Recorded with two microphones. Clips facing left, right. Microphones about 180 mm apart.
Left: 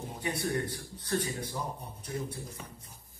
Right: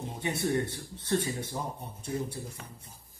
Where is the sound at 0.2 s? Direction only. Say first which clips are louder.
Right 3 dB; 25° right (ahead or behind).